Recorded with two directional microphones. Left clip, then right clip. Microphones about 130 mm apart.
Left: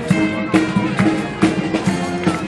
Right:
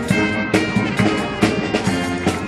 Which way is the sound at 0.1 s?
25° right (ahead or behind).